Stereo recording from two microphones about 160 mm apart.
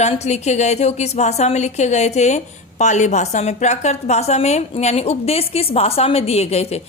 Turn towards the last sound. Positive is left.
turn(degrees=40)  # may be behind; listen again after turning